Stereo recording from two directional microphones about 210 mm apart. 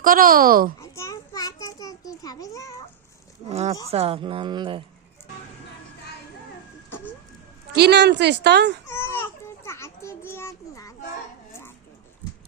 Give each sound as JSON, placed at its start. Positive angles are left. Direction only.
{"t": 0.0, "sound": "a woman's voice", "side_deg": -40}
{"t": 0.8, "sound": "a child's voice", "side_deg": 15}
{"t": 3.5, "sound": "speech", "side_deg": -30}
{"t": 7.7, "sound": "a woman's voice", "side_deg": -50}
{"t": 8.9, "sound": "a child's voice", "side_deg": 10}